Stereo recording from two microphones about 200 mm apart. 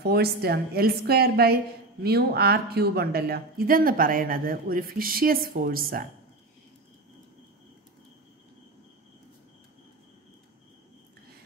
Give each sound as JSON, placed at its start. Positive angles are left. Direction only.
{"t": 0.0, "sound": "speech", "side_deg": -50}